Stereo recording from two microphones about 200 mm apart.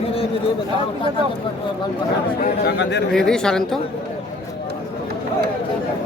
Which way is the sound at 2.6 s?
60° left (ahead or behind).